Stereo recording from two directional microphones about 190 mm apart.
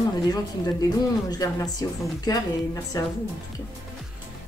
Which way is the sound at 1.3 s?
20° left (ahead or behind).